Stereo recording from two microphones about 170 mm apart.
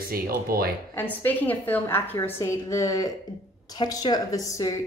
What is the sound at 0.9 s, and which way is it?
A woman's voice, 10° left (ahead or behind).